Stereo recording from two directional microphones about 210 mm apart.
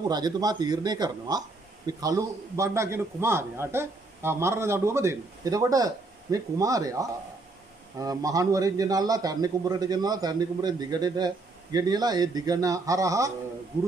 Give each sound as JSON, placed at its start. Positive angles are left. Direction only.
{"t": 0.1, "sound": "a man's voice", "side_deg": -20}